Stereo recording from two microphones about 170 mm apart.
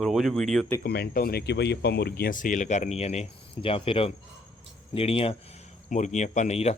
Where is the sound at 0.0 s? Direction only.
Centre (ahead or behind).